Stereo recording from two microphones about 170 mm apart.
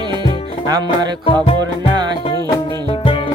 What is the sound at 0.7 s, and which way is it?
Music, 25° right (ahead or behind).